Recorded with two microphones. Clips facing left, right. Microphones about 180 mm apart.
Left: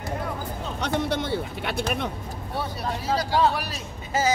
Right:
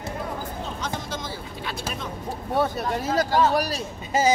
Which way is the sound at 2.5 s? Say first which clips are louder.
Right 6 dB; 50° right (ahead or behind).